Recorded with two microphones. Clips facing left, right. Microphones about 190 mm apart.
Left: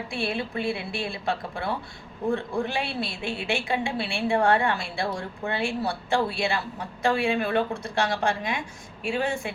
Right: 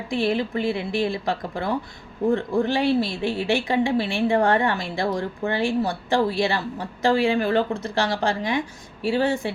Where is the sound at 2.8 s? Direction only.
40° right (ahead or behind).